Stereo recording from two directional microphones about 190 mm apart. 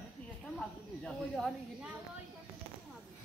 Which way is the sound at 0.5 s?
Centre (ahead or behind).